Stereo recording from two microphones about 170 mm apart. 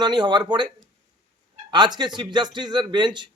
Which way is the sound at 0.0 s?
25° right (ahead or behind).